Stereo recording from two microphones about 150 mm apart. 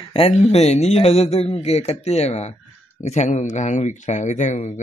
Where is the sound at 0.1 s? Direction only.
45° left (ahead or behind).